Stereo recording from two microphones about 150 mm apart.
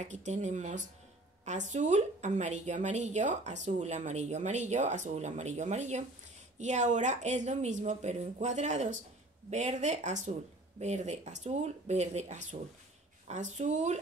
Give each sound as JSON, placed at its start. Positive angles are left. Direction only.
{"t": 0.0, "sound": "a woman's voice", "side_deg": -50}